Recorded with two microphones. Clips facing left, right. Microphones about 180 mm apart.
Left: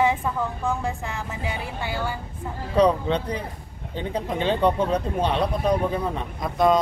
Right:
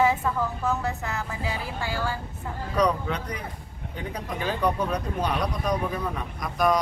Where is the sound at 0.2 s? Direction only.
15° left (ahead or behind).